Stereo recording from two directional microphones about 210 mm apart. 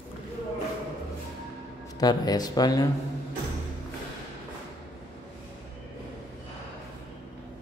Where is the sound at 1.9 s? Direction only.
20° left (ahead or behind).